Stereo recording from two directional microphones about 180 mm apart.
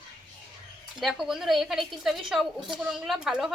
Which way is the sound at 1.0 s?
Centre (ahead or behind).